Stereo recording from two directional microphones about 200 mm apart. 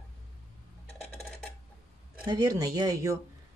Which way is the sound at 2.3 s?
15° right (ahead or behind).